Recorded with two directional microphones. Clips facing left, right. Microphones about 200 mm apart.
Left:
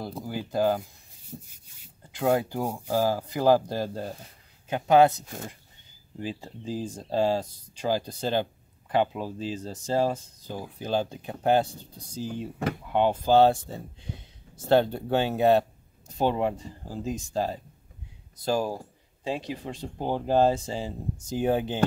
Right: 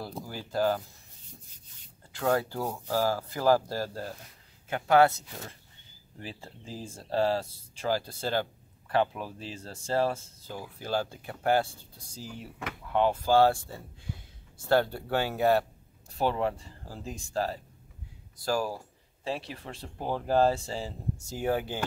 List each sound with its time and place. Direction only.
0.2 s speech: 20° left (ahead or behind)
1.3 s rub: 40° left (ahead or behind)
2.1 s speech: 15° left (ahead or behind)
5.2 s speech: 50° left (ahead or behind)
6.1 s speech: 15° left (ahead or behind)